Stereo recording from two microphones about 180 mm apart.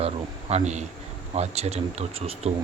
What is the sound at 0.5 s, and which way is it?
A man's voice, 40° right (ahead or behind).